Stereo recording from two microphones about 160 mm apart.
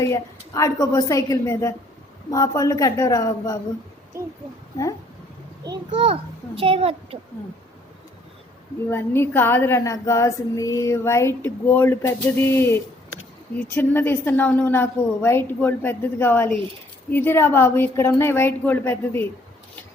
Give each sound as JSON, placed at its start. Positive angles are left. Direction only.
{"t": 0.0, "sound": "a woman's voice", "side_deg": 20}
{"t": 4.1, "sound": "speech", "side_deg": -20}
{"t": 5.9, "sound": "a child's voice", "side_deg": -35}
{"t": 8.9, "sound": "speech", "side_deg": 15}